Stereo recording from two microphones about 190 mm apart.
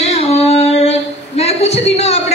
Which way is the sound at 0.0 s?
35° left (ahead or behind).